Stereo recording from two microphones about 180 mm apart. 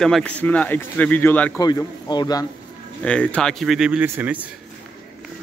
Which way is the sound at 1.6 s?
20° left (ahead or behind).